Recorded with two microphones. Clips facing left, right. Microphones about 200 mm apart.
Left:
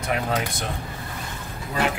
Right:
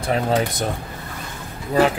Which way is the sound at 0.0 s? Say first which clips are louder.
Right 5 dB; 30° right (ahead or behind).